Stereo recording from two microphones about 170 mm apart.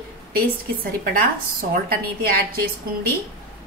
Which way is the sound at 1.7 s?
60° right (ahead or behind).